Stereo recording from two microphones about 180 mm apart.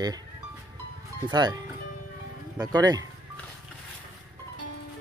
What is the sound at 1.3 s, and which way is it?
Speech, 20° right (ahead or behind).